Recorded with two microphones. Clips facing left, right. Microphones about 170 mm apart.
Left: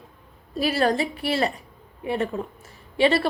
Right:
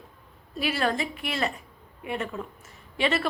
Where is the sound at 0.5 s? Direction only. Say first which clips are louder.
Left 5 dB; 35° left (ahead or behind).